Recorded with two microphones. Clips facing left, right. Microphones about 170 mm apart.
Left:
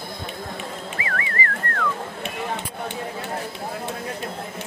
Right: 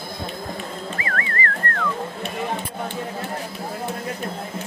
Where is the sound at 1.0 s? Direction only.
15° left (ahead or behind).